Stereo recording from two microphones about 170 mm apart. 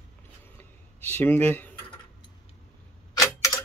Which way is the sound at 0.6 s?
10° left (ahead or behind).